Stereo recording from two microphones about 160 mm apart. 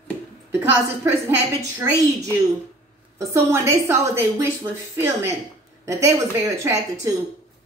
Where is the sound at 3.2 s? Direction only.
20° right (ahead or behind).